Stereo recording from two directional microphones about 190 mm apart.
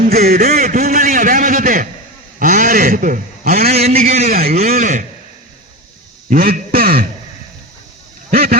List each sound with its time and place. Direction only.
0.1 s a man's voice: 55° right (ahead or behind)
4.1 s a man's voice: 35° right (ahead or behind)
6.3 s speech: 50° right (ahead or behind)
8.3 s a sound: 50° right (ahead or behind)